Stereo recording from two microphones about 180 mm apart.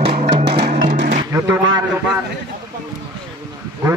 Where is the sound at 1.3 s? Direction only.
15° right (ahead or behind).